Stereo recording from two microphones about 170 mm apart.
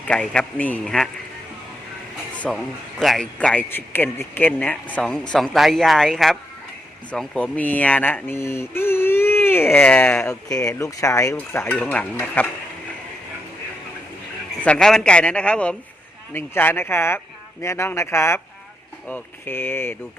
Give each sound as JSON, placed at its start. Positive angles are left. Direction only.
{"t": 0.1, "sound": "a man's voice", "side_deg": 5}
{"t": 2.4, "sound": "a man's voice", "side_deg": 5}
{"t": 14.6, "sound": "speech", "side_deg": 5}